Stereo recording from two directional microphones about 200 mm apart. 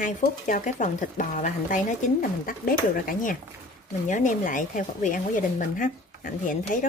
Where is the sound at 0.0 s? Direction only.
40° left (ahead or behind).